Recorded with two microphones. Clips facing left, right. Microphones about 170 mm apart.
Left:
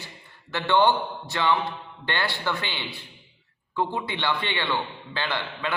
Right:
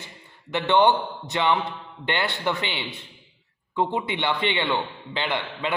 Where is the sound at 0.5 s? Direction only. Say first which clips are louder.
Right 2 dB; 20° right (ahead or behind).